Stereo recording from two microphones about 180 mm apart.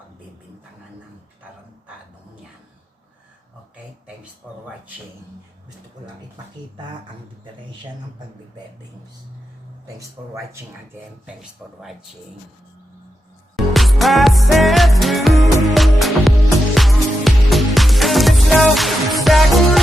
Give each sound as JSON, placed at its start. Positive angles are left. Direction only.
{"t": 4.4, "sound": "speech", "side_deg": 0}
{"t": 10.0, "sound": "speech", "side_deg": -15}
{"t": 11.3, "sound": "speech", "side_deg": 0}
{"t": 13.6, "sound": "music", "side_deg": 0}